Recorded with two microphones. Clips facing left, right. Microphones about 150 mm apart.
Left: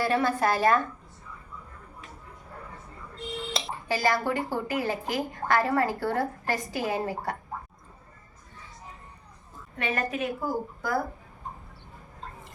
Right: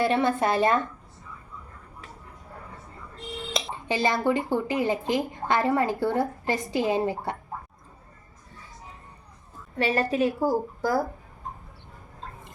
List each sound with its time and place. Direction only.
0.0 s speech: 25° right (ahead or behind)
3.7 s speech: 20° right (ahead or behind)
9.7 s a woman's voice: 30° right (ahead or behind)